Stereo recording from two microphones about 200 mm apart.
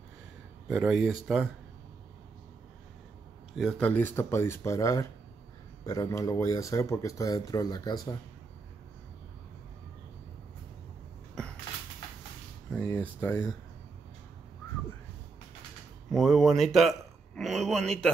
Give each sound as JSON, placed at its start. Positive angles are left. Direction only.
{"t": 0.7, "sound": "speech", "side_deg": -5}
{"t": 3.5, "sound": "speech", "side_deg": 5}
{"t": 12.7, "sound": "speech", "side_deg": 10}
{"t": 16.1, "sound": "speech", "side_deg": 0}